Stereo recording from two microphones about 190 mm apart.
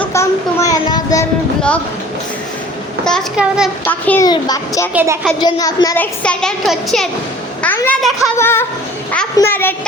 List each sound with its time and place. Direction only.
0.0 s child singing: 15° left (ahead or behind)
3.0 s speech: 5° left (ahead or behind)
3.8 s a child's voice: 10° left (ahead or behind)
4.9 s speech: 10° right (ahead or behind)
5.4 s a woman's voice: 20° left (ahead or behind)
6.2 s a child's voice: 5° left (ahead or behind)